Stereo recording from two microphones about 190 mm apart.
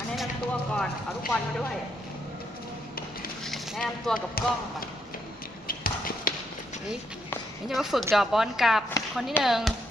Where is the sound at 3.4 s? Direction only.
Centre (ahead or behind).